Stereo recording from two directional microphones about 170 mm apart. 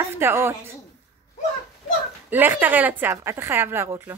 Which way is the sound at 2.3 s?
10° right (ahead or behind).